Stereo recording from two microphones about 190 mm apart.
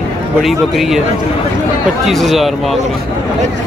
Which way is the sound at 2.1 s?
Centre (ahead or behind).